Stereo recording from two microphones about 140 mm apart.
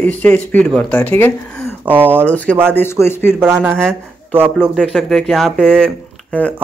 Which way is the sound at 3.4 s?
15° right (ahead or behind).